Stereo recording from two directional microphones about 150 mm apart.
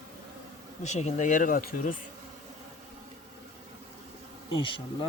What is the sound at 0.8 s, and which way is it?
Speech, 50° left (ahead or behind).